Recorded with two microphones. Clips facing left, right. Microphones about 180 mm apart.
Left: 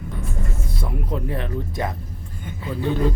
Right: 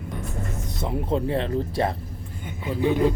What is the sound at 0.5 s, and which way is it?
Speech, 20° right (ahead or behind).